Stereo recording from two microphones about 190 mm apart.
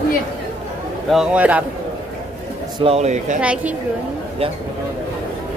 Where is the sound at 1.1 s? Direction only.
5° right (ahead or behind).